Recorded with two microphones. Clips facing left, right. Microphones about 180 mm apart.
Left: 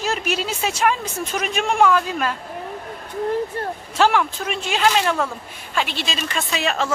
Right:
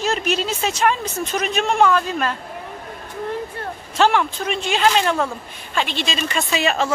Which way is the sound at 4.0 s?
5° left (ahead or behind).